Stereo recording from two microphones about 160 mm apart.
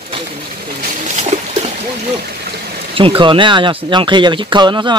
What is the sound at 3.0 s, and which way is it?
Speech, 35° right (ahead or behind).